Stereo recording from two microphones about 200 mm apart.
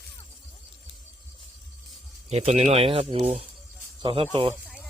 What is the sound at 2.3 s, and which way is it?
Speech, 35° right (ahead or behind).